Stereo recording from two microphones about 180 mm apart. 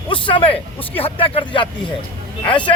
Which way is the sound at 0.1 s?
30° left (ahead or behind).